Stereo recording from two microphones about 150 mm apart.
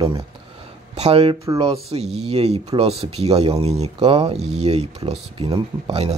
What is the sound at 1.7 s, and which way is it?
Speech, 45° right (ahead or behind).